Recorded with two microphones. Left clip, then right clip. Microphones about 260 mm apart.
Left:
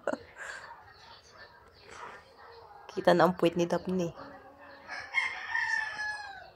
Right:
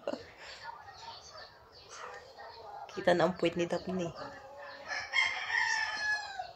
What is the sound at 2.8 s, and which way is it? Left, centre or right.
Speech, left.